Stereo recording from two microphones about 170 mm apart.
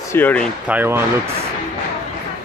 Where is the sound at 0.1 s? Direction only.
10° left (ahead or behind).